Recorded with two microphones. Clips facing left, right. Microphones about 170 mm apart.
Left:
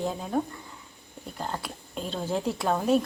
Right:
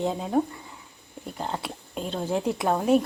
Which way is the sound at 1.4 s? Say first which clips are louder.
Right 2 dB; 20° right (ahead or behind).